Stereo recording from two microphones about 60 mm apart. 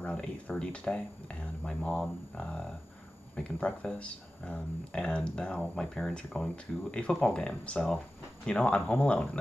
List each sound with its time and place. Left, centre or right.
0.0 s speech: centre